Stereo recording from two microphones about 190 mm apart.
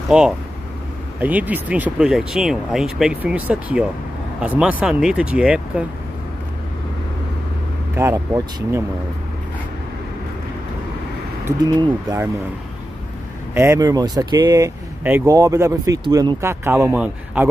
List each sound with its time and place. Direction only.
0.1 s speech: 5° right (ahead or behind)
7.9 s speech: 15° right (ahead or behind)
11.4 s speech: 20° right (ahead or behind)
13.6 s speech: 15° right (ahead or behind)